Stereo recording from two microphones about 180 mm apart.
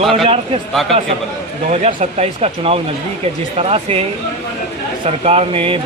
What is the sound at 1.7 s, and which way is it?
Speech, 35° right (ahead or behind).